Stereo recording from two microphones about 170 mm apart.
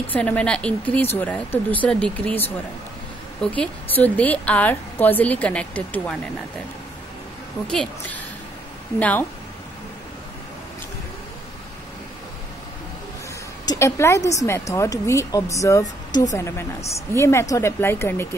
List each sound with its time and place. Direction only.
0.1 s a woman's voice: 10° left (ahead or behind)
7.6 s a woman's voice: 5° left (ahead or behind)
13.7 s a woman's voice: 15° left (ahead or behind)